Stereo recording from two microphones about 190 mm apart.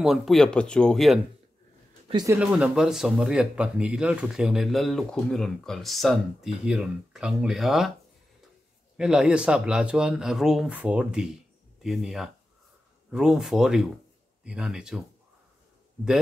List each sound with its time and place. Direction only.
0.0 s speech: centre (ahead or behind)
2.2 s speech: 5° right (ahead or behind)
8.9 s speech: 5° right (ahead or behind)